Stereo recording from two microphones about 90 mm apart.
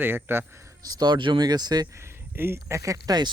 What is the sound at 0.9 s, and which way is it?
Speech, 55° right (ahead or behind).